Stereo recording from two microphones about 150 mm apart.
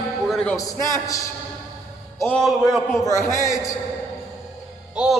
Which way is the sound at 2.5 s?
Centre (ahead or behind).